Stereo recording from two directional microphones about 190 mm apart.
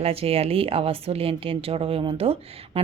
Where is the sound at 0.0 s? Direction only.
30° right (ahead or behind).